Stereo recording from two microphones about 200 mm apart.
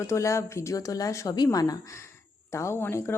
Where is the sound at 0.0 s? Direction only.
15° left (ahead or behind).